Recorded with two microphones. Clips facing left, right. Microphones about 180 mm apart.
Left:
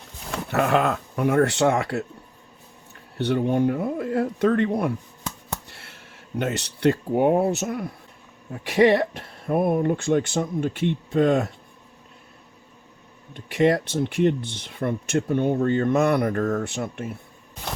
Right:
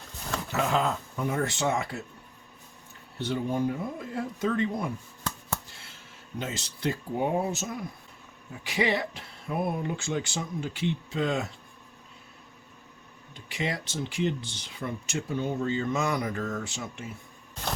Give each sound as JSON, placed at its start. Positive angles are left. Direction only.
{"t": 0.4, "sound": "speech", "side_deg": 60}
{"t": 3.2, "sound": "speech", "side_deg": 65}
{"t": 5.6, "sound": "a sound", "side_deg": 65}
{"t": 6.4, "sound": "speech", "side_deg": 65}
{"t": 8.6, "sound": "speech", "side_deg": 55}
{"t": 13.3, "sound": "speech", "side_deg": 55}